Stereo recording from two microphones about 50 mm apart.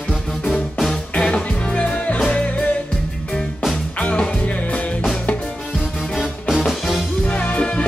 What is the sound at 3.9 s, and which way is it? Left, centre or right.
Music, left.